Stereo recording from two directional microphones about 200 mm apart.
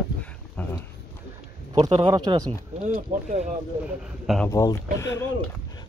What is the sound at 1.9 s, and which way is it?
Speech, 25° right (ahead or behind).